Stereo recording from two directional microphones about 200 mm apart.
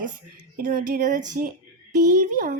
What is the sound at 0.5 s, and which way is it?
Speech, 45° right (ahead or behind).